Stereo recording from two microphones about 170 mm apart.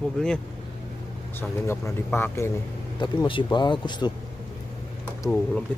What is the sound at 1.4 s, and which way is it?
A man's voice, 15° left (ahead or behind).